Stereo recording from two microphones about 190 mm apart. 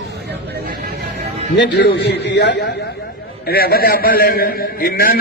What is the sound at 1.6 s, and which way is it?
A man's voice, 65° left (ahead or behind).